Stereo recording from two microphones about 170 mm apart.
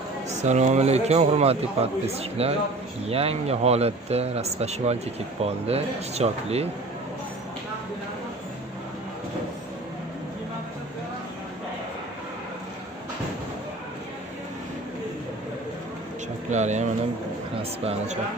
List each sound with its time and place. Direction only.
0.3 s a man's voice: 45° right (ahead or behind)
16.5 s speech: 45° right (ahead or behind)